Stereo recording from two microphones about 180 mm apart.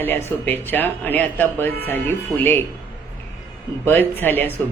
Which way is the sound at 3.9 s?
10° left (ahead or behind).